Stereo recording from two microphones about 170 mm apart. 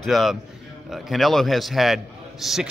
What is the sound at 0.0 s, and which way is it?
A man's voice, centre (ahead or behind).